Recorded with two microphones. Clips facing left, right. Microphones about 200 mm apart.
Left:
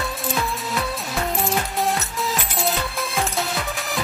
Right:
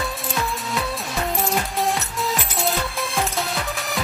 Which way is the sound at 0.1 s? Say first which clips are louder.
Left 1 dB; centre (ahead or behind).